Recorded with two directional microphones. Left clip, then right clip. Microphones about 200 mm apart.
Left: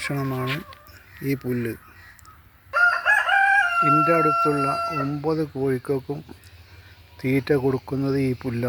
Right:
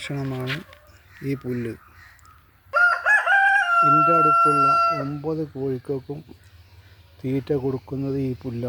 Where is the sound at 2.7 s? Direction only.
35° right (ahead or behind).